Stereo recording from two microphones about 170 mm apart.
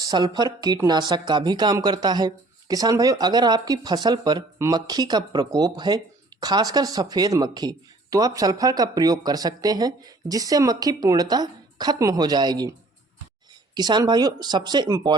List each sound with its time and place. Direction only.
0.0 s speech: 25° right (ahead or behind)
13.7 s speech: 25° right (ahead or behind)